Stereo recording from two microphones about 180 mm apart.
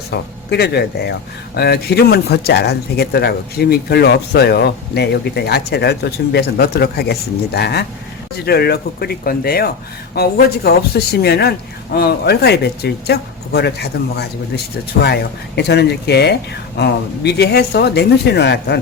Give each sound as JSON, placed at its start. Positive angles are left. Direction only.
{"t": 0.1, "sound": "speech", "side_deg": 65}